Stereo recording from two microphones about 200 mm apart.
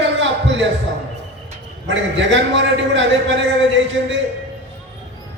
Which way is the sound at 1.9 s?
65° right (ahead or behind).